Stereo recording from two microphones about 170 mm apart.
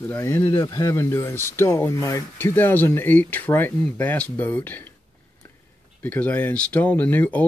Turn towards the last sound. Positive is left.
turn(degrees=10)  # may be behind; listen again after turning